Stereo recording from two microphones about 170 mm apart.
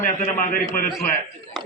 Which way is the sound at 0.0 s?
55° left (ahead or behind).